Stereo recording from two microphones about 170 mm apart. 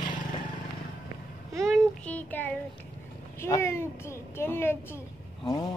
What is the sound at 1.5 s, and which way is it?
A child's voice, centre (ahead or behind).